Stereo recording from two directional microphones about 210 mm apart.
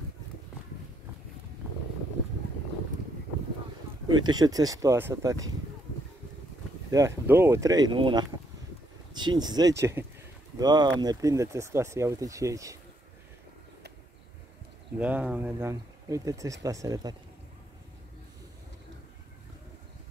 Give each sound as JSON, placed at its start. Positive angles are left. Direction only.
{"t": 4.2, "sound": "speech", "side_deg": -20}
{"t": 6.9, "sound": "speech", "side_deg": -15}
{"t": 15.0, "sound": "speech", "side_deg": -5}